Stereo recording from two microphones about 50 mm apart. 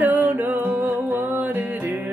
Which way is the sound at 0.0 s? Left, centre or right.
Right.